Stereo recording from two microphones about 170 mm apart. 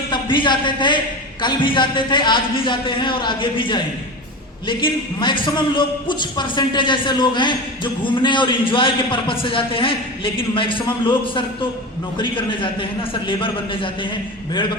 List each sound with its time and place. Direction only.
0.1 s a man's voice: 30° left (ahead or behind)